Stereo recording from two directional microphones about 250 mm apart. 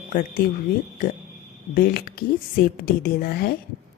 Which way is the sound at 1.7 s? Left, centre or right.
Left.